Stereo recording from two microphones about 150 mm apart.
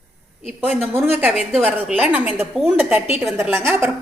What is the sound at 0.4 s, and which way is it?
A woman's voice, 10° right (ahead or behind).